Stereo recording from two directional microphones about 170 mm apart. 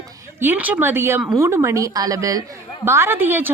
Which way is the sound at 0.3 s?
10° right (ahead or behind).